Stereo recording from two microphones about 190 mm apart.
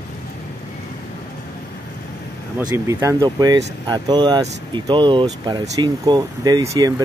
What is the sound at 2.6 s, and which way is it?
Speech, 20° right (ahead or behind).